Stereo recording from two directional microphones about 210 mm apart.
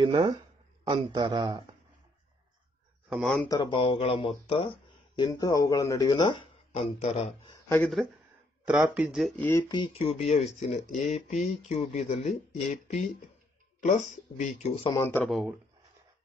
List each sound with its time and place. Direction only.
0.0 s a man's voice: 20° right (ahead or behind)
3.1 s speech: centre (ahead or behind)
3.4 s speech: 20° left (ahead or behind)
7.6 s speech: 10° left (ahead or behind)
8.6 s speech: 10° right (ahead or behind)
9.4 s speech: 15° left (ahead or behind); by 14.9 s 35° left (ahead or behind)
15.0 s speech: 10° left (ahead or behind)
15.2 s speech: centre (ahead or behind)